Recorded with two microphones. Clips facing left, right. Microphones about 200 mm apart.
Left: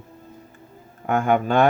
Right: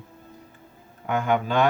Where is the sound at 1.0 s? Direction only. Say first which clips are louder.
Left 4 dB; 50° left (ahead or behind).